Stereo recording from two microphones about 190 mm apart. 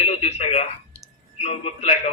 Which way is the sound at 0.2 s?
35° left (ahead or behind).